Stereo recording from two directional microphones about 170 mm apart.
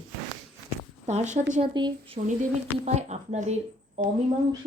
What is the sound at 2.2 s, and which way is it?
Speech, 45° right (ahead or behind).